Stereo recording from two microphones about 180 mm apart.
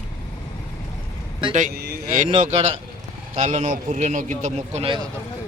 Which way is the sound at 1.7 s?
60° right (ahead or behind).